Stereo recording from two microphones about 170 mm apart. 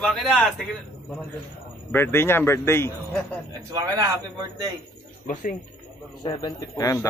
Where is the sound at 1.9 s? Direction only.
15° left (ahead or behind).